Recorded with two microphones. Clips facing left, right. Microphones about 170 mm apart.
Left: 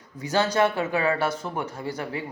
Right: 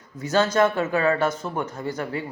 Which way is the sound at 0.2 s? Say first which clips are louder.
Right 2 dB; 15° left (ahead or behind).